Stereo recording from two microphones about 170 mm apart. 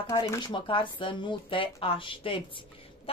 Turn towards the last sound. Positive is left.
turn(degrees=30)  # may be behind; listen again after turning